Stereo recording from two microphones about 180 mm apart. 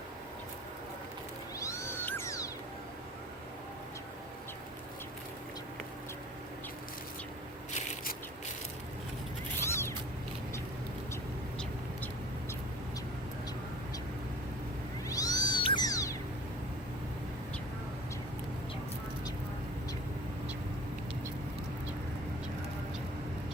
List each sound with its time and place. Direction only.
1.5 s cat: 15° left (ahead or behind)
7.7 s a sound: 40° left (ahead or behind)
9.6 s zipper: 15° left (ahead or behind)
15.1 s cat: 20° left (ahead or behind)